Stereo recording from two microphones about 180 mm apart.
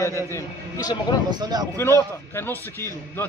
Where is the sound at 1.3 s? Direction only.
25° right (ahead or behind).